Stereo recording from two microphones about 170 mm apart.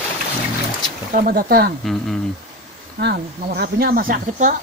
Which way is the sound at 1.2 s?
60° right (ahead or behind).